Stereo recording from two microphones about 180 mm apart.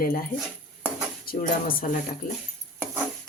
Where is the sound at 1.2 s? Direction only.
55° left (ahead or behind).